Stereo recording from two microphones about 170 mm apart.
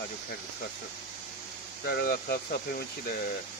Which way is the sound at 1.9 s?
65° left (ahead or behind).